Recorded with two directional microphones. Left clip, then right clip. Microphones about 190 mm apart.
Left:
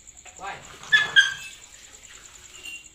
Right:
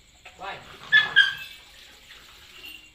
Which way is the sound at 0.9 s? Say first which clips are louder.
Right 1 dB; 60° left (ahead or behind).